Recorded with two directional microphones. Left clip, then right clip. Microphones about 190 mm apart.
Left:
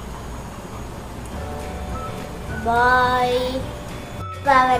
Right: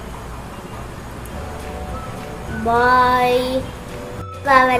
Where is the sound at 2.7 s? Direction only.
25° right (ahead or behind).